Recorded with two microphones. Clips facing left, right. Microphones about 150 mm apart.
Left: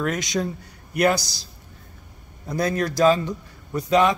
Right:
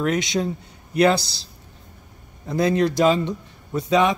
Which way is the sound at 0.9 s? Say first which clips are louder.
Right 3 dB; 30° right (ahead or behind).